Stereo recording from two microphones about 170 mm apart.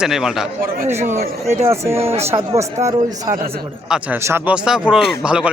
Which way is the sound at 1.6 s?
15° right (ahead or behind).